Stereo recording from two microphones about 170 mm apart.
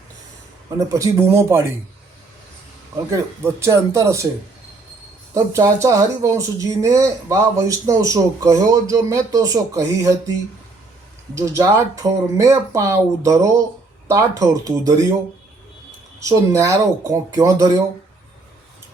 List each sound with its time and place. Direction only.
0.8 s speech: 20° right (ahead or behind)
3.1 s speech: 15° right (ahead or behind)
5.3 s speech: 20° right (ahead or behind)
11.3 s speech: 20° right (ahead or behind)
16.5 s speech: 20° right (ahead or behind)